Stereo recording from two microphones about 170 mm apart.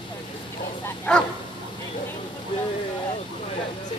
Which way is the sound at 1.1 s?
5° left (ahead or behind).